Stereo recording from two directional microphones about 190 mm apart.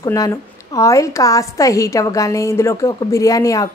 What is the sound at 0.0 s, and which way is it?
A woman's voice, 20° left (ahead or behind).